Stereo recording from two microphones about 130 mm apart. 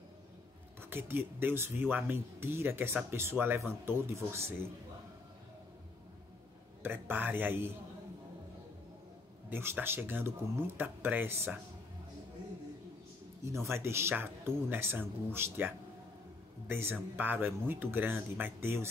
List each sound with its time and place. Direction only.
0.7 s speech: 15° right (ahead or behind)
6.8 s speech: 15° right (ahead or behind)
9.5 s speech: 15° right (ahead or behind)
13.5 s speech: 20° right (ahead or behind)